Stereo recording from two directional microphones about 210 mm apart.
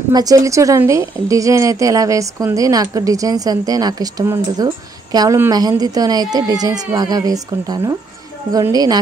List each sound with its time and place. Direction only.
0.1 s a woman's voice: 15° right (ahead or behind)